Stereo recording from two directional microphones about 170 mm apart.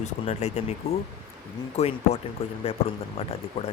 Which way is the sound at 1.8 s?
40° left (ahead or behind).